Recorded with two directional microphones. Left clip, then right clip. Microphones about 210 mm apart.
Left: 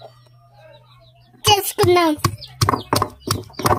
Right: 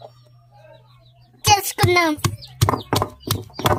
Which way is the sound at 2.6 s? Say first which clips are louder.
Left 2 dB; 10° right (ahead or behind).